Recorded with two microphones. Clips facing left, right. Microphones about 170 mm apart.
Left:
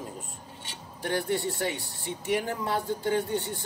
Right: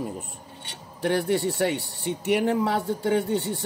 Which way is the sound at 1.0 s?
70° right (ahead or behind).